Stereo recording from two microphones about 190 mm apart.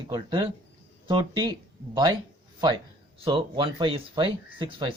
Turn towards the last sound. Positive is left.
turn(degrees=-25)  # may be behind; listen again after turning